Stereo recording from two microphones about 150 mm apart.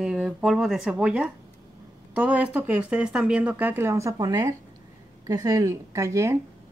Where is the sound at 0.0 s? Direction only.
5° right (ahead or behind).